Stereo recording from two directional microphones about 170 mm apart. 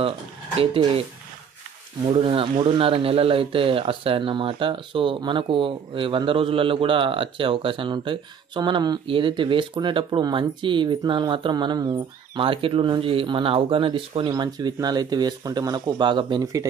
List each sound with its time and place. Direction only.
0.6 s speech: 35° right (ahead or behind)
2.0 s speech: 30° right (ahead or behind)